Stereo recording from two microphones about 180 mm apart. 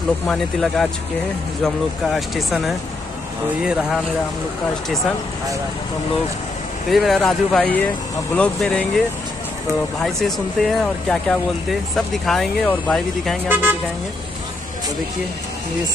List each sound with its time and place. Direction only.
0.3 s speech: centre (ahead or behind)
2.1 s speech: centre (ahead or behind)
6.9 s speech: centre (ahead or behind)
10.2 s speech: centre (ahead or behind)
13.5 s speech: 10° right (ahead or behind)